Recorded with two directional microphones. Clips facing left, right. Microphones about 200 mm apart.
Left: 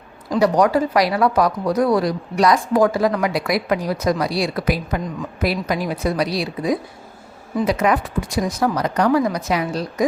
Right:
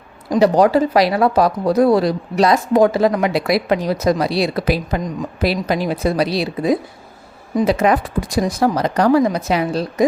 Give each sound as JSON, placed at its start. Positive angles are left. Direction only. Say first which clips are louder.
{"t": 0.3, "sound": "speech", "louder": "right 3 dB", "side_deg": -25}